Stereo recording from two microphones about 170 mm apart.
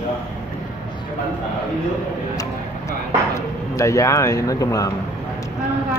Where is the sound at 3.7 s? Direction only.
20° left (ahead or behind).